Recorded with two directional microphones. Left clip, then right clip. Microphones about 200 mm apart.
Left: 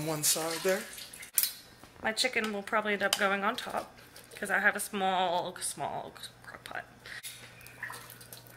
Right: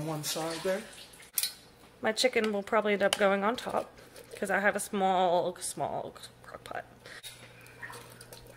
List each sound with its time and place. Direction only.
0.1 s speech: 5° left (ahead or behind)
2.0 s speech: 60° right (ahead or behind)
6.6 s whispering: 60° right (ahead or behind)